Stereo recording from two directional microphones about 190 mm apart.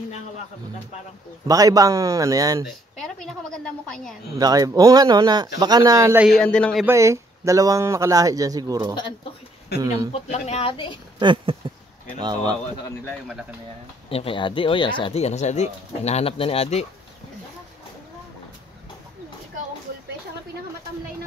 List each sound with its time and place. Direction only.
1.5 s speech: 20° right (ahead or behind)
3.0 s a woman's voice: centre (ahead or behind)
4.4 s speech: 20° right (ahead or behind)
6.2 s a woman's voice: centre (ahead or behind)
6.9 s speech: 15° right (ahead or behind)
10.1 s speech: 35° left (ahead or behind)
11.1 s speech: 25° right (ahead or behind)
14.0 s speech: 30° left (ahead or behind)